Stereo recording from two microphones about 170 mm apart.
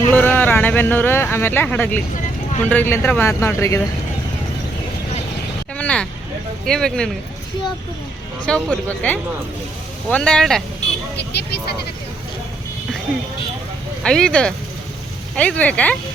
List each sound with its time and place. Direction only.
0.1 s speech: 10° left (ahead or behind)
5.7 s vehicle: 5° left (ahead or behind)
6.7 s speech: 5° left (ahead or behind)
8.4 s speech: 5° left (ahead or behind)
11.2 s speech: 80° left
14.0 s speech: 5° left (ahead or behind)